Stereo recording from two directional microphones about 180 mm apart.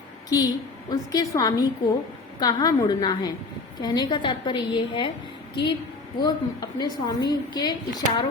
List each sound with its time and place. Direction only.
0.3 s a woman's voice: 20° left (ahead or behind)
6.1 s a woman's voice: 25° left (ahead or behind)